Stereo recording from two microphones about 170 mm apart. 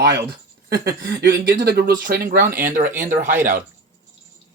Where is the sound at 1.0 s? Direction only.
60° right (ahead or behind).